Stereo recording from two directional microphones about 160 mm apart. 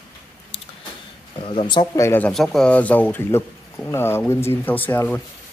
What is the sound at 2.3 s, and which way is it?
Speech, 5° left (ahead or behind).